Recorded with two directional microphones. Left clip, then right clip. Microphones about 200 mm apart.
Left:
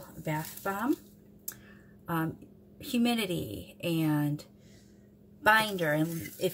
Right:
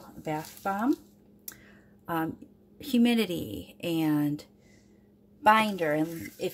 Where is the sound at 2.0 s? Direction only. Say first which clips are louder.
Right 2 dB; 35° right (ahead or behind).